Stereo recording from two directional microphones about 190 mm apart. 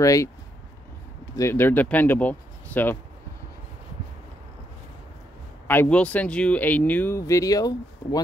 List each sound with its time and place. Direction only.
0.0 s speech: 15° left (ahead or behind)
1.3 s speech: 15° left (ahead or behind)
5.7 s speech: 10° left (ahead or behind)